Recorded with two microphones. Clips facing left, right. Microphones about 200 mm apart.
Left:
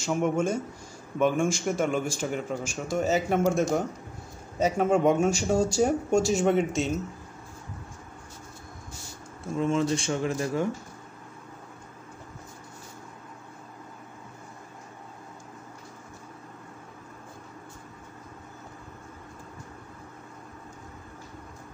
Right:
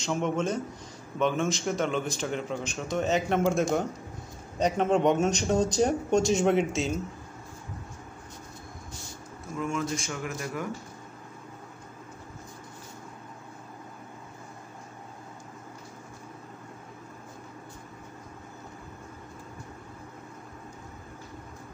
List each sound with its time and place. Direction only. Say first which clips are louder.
0.0 s speech: left 2 dB; 5° left (ahead or behind)
9.6 s speech: left 5 dB; 30° left (ahead or behind)